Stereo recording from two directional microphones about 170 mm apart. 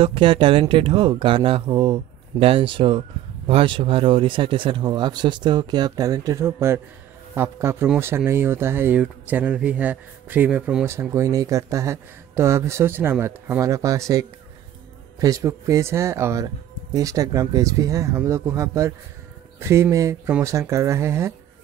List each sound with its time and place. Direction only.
0.0 s speech: 30° right (ahead or behind)